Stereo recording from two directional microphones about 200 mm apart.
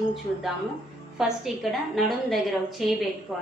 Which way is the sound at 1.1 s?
Centre (ahead or behind).